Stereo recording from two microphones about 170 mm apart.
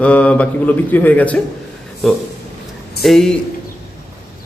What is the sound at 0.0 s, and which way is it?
Speech, 10° left (ahead or behind).